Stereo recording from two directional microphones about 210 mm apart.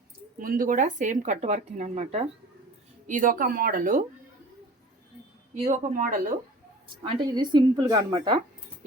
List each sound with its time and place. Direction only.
0.3 s speech: 40° right (ahead or behind)
5.5 s speech: 35° right (ahead or behind)
6.8 s a woman's voice: 20° right (ahead or behind)